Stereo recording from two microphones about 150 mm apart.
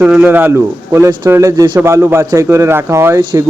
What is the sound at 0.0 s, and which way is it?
Speech, 10° right (ahead or behind).